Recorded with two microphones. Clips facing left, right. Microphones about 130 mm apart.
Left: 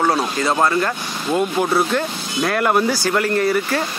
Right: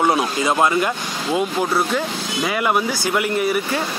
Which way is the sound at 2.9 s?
20° right (ahead or behind).